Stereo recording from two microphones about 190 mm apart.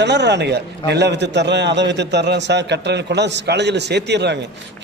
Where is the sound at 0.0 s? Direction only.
65° right (ahead or behind).